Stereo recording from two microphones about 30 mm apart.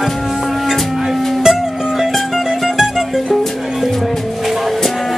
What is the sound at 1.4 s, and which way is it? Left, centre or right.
Music, centre.